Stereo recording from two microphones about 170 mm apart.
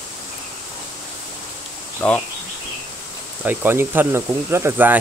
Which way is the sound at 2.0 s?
10° left (ahead or behind).